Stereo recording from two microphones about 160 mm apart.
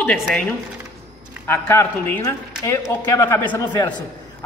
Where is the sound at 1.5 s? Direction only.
15° left (ahead or behind).